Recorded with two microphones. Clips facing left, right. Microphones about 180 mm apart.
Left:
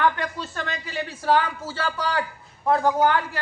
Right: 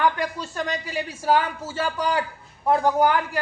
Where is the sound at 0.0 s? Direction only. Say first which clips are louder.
Right 1 dB; 15° right (ahead or behind).